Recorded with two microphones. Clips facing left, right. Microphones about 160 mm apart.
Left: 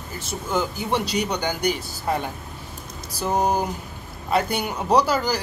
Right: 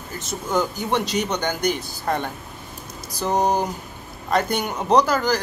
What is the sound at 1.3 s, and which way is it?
Speech, 10° left (ahead or behind).